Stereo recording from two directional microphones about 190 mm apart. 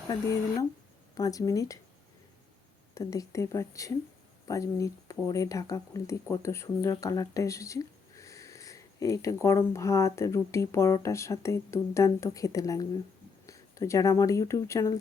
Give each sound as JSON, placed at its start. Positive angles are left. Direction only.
{"t": 1.1, "sound": "speech", "side_deg": 20}
{"t": 2.9, "sound": "speech", "side_deg": 15}